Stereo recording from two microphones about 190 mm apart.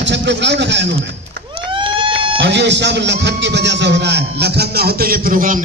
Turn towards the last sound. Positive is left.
turn(degrees=-45)  # may be behind; listen again after turning